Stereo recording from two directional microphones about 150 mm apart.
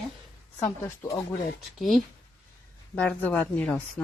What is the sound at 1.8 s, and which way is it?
A woman's voice, centre (ahead or behind).